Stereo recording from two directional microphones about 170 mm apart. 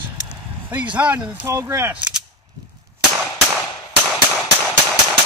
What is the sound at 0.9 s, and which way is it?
Speech, 10° right (ahead or behind).